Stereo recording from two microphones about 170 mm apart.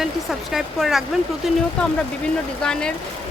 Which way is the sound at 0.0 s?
Centre (ahead or behind).